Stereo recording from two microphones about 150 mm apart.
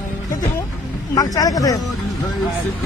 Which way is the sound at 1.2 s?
25° left (ahead or behind).